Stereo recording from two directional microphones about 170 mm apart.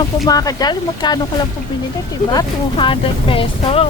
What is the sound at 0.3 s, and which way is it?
Speech, 20° left (ahead or behind).